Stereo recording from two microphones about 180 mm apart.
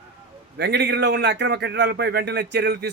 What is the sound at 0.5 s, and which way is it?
A man's voice, 70° right (ahead or behind).